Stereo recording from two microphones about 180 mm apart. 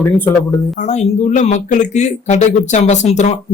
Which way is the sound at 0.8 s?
40° left (ahead or behind).